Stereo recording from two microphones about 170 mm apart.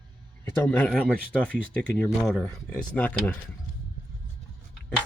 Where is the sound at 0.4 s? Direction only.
10° left (ahead or behind).